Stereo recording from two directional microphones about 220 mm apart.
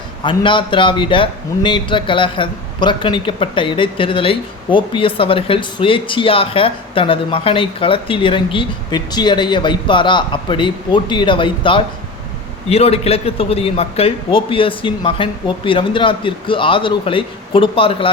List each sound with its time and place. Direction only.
0.3 s a man's voice: 20° left (ahead or behind)